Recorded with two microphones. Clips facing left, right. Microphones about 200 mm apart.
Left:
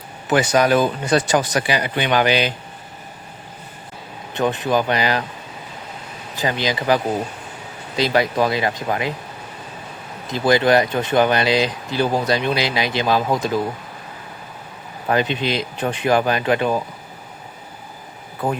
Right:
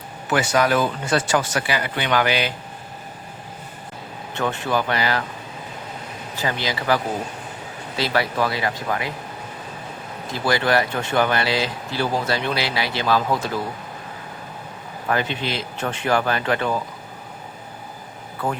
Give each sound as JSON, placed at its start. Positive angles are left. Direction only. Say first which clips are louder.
{"t": 0.3, "sound": "speech", "louder": "left 3 dB", "side_deg": 20}
{"t": 4.4, "sound": "speech", "louder": "left 4 dB", "side_deg": 15}
{"t": 6.4, "sound": "speech", "louder": "left 4 dB", "side_deg": 20}
{"t": 10.3, "sound": "speech", "louder": "left 5 dB", "side_deg": 20}
{"t": 15.0, "sound": "speech", "louder": "left 4 dB", "side_deg": 20}